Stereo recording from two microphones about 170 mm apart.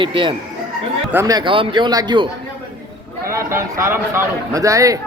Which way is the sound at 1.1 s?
20° right (ahead or behind).